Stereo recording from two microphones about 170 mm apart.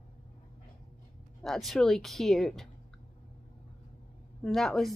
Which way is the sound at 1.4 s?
Centre (ahead or behind).